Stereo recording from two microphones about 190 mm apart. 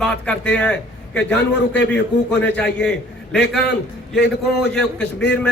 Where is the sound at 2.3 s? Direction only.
65° left (ahead or behind).